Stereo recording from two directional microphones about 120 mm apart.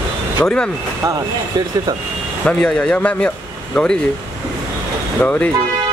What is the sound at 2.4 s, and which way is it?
Speech, 10° left (ahead or behind).